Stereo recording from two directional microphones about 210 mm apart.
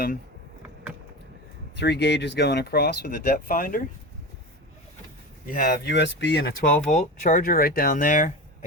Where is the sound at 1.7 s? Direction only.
55° left (ahead or behind).